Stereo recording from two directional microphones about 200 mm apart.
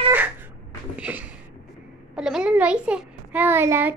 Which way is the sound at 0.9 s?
5° right (ahead or behind).